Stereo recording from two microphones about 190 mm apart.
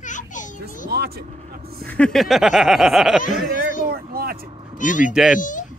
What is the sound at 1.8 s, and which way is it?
Speech, 5° left (ahead or behind).